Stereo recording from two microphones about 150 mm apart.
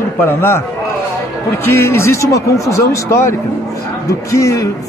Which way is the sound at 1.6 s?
15° left (ahead or behind).